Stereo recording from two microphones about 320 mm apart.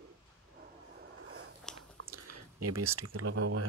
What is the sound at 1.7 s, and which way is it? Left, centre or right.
Chewing, centre.